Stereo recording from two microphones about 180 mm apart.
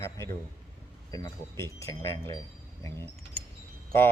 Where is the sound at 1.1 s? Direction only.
20° left (ahead or behind).